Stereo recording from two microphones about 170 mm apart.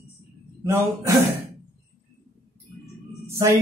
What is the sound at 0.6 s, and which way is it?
Mantra, 20° right (ahead or behind).